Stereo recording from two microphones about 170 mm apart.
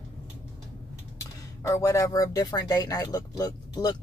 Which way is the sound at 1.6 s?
15° left (ahead or behind).